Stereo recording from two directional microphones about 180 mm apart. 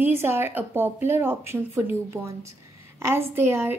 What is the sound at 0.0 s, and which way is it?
Speech, 15° right (ahead or behind).